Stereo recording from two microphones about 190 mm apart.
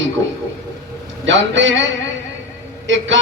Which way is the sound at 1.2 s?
75° right (ahead or behind).